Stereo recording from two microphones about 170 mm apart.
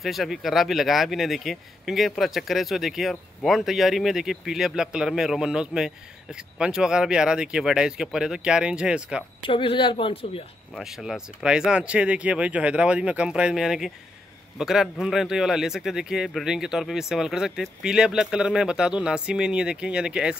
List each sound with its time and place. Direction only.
0.0 s speech: centre (ahead or behind)
9.4 s speech: 30° left (ahead or behind)
10.7 s speech: centre (ahead or behind)